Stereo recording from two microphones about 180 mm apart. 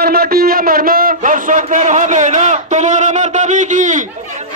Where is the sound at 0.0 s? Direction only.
55° right (ahead or behind).